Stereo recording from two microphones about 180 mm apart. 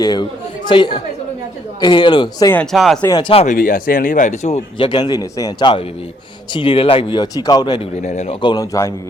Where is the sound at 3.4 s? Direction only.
50° left (ahead or behind).